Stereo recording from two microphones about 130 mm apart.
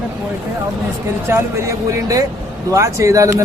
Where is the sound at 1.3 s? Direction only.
20° right (ahead or behind).